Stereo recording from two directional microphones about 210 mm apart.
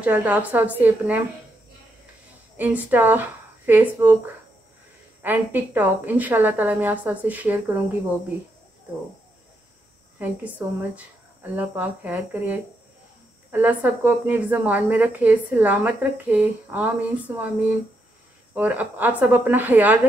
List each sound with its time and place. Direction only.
0.0 s speech: 5° right (ahead or behind)
2.5 s speech: 10° right (ahead or behind)
5.2 s speech: 10° right (ahead or behind)
10.1 s speech: 10° right (ahead or behind)
18.5 s speech: 10° right (ahead or behind)